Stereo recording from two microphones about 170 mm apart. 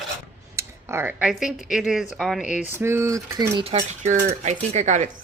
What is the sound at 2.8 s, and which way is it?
Speech, 15° right (ahead or behind).